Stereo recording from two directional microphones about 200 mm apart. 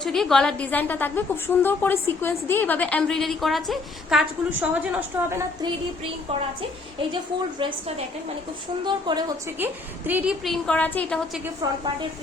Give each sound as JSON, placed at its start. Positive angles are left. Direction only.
{"t": 0.0, "sound": "a woman's voice", "side_deg": 0}
{"t": 8.8, "sound": "a woman's voice", "side_deg": -20}
{"t": 10.1, "sound": "a woman's voice", "side_deg": -5}